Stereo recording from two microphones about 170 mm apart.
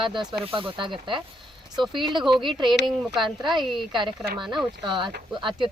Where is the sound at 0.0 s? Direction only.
30° right (ahead or behind).